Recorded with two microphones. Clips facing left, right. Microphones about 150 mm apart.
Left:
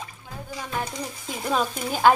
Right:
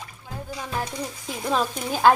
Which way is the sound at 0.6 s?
5° left (ahead or behind).